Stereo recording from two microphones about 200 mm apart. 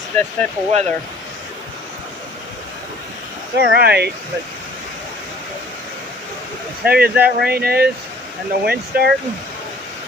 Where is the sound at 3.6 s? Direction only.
55° right (ahead or behind).